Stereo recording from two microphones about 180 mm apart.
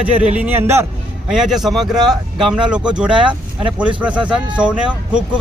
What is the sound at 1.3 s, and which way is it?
A man's voice, centre (ahead or behind).